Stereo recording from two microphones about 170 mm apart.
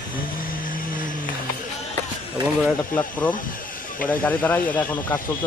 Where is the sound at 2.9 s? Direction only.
10° left (ahead or behind).